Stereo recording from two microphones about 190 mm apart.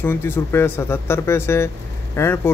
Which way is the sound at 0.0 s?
10° left (ahead or behind).